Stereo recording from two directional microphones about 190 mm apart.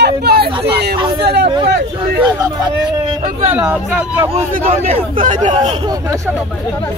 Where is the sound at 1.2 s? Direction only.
60° right (ahead or behind).